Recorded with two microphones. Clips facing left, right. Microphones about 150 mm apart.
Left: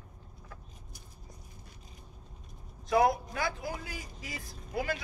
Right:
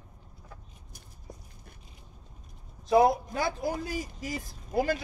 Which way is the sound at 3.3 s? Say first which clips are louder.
Right 5 dB; 35° right (ahead or behind).